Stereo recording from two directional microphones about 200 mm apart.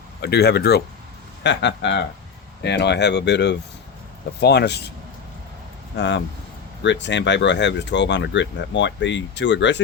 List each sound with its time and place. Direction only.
0.2 s speech: 55° left (ahead or behind)
6.0 s speech: 60° left (ahead or behind)